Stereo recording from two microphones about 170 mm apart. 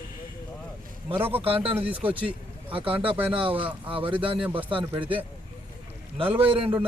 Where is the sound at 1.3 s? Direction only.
35° right (ahead or behind).